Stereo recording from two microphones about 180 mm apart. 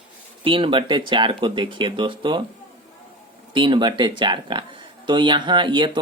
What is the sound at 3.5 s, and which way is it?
Speech, 25° right (ahead or behind).